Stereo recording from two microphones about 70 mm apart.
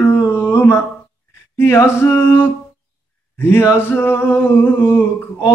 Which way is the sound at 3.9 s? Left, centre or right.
Left.